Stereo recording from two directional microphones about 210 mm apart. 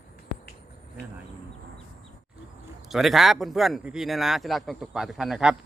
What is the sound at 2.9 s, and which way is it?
Speech, centre (ahead or behind).